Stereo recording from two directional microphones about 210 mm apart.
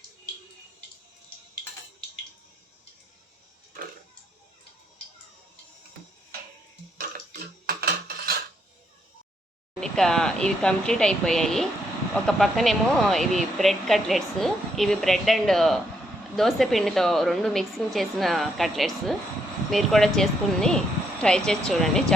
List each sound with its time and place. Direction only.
7.7 s cutlery: 45° right (ahead or behind)
9.8 s a woman's voice: centre (ahead or behind)